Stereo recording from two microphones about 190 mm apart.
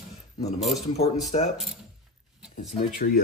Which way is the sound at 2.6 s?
45° left (ahead or behind).